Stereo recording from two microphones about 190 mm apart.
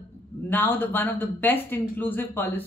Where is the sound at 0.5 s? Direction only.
10° left (ahead or behind).